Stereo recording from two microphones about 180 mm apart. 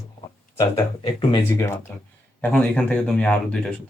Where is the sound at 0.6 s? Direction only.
30° left (ahead or behind).